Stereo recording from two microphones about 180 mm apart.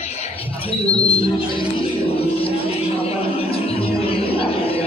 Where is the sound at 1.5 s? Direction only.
30° left (ahead or behind).